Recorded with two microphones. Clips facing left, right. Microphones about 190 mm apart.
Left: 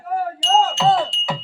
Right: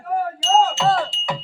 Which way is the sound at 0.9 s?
Centre (ahead or behind).